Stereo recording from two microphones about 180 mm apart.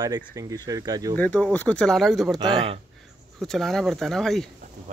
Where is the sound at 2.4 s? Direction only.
30° right (ahead or behind).